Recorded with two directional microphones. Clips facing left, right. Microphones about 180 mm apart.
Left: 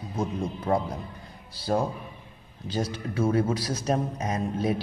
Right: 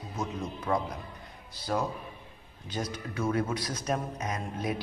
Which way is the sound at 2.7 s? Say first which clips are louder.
Left 5 dB; 30° left (ahead or behind).